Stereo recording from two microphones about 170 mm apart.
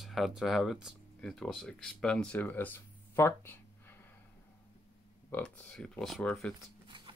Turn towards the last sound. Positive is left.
turn(degrees=-30)  # may be behind; listen again after turning